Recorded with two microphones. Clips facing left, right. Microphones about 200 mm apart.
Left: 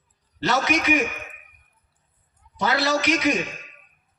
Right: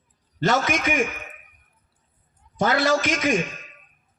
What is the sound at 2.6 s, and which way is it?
Speech, 50° right (ahead or behind).